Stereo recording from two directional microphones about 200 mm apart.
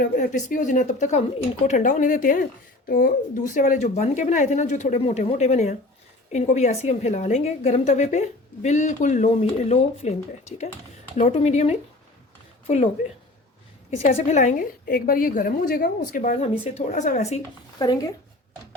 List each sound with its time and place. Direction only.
0.0 s a woman's voice: 40° left (ahead or behind)
11.2 s a woman's voice: 30° left (ahead or behind)
13.9 s a woman's voice: 40° left (ahead or behind)
17.7 s speech: 20° left (ahead or behind)